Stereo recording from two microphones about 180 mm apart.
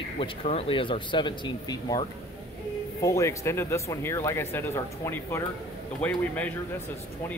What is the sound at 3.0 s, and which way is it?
Speech, 15° left (ahead or behind).